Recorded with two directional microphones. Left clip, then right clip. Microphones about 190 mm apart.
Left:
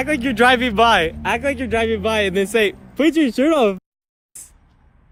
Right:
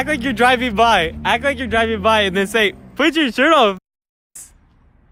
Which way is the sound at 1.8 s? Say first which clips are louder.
Right 2 dB; 40° right (ahead or behind).